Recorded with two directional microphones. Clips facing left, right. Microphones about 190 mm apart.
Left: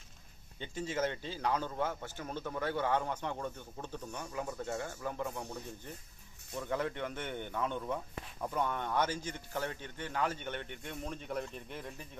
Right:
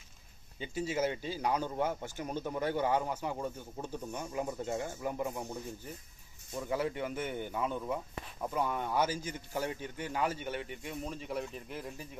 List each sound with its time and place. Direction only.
0.6 s speech: 10° right (ahead or behind)